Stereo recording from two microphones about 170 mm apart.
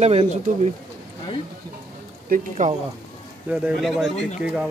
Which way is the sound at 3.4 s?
5° right (ahead or behind).